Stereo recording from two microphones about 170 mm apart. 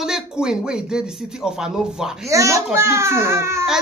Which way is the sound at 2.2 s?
15° right (ahead or behind).